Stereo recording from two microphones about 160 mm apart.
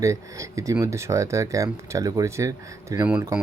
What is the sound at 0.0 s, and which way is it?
Speech, 20° right (ahead or behind).